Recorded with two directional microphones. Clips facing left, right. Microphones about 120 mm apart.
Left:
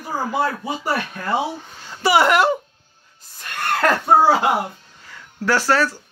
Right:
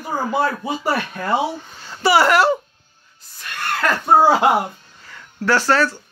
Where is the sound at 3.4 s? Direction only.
40° left (ahead or behind).